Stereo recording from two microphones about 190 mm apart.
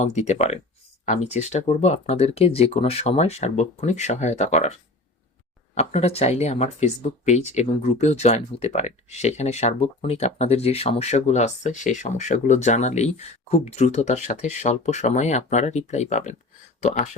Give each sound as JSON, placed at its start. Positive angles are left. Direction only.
{"t": 0.0, "sound": "speech", "side_deg": 35}